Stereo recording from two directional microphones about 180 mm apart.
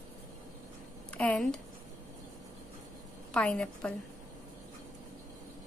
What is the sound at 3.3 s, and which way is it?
Speech, 5° left (ahead or behind).